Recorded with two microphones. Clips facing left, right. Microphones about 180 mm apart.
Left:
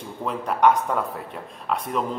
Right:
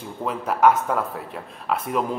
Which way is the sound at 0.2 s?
5° right (ahead or behind).